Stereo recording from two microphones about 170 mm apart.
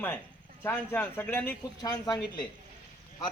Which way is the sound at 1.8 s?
25° left (ahead or behind).